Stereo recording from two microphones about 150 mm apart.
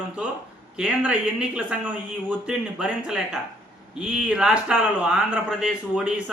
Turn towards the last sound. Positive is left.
turn(degrees=-10)  # may be behind; listen again after turning